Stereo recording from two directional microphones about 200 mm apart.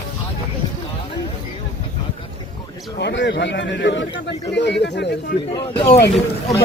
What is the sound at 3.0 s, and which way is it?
A man's voice, 60° left (ahead or behind).